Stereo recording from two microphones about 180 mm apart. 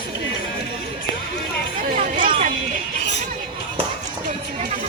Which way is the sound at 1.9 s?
45° right (ahead or behind).